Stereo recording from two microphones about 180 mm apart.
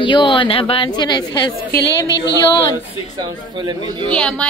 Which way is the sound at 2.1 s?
75° left (ahead or behind).